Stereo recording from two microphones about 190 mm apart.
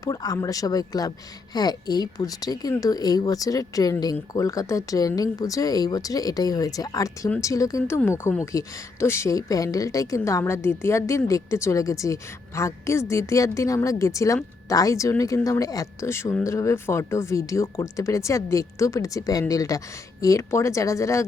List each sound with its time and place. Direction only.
0.0 s speech: 20° left (ahead or behind)